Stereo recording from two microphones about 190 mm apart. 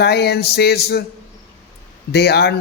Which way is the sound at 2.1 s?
60° left (ahead or behind).